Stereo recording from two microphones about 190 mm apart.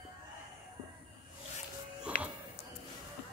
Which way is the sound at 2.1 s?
50° left (ahead or behind).